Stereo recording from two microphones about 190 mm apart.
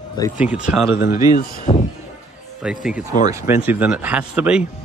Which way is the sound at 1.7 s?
35° left (ahead or behind).